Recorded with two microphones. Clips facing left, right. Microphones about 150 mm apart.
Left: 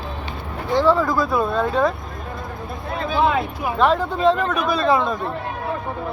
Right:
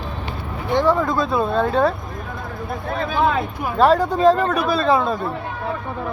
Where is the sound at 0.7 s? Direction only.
15° right (ahead or behind).